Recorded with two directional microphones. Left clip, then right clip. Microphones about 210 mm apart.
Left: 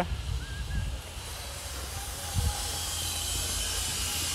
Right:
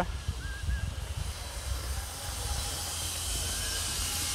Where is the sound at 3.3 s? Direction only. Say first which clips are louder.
Left 2 dB; 15° left (ahead or behind).